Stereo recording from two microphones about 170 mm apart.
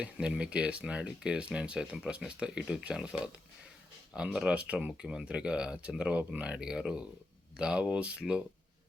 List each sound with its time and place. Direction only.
0.0 s speech: 5° right (ahead or behind)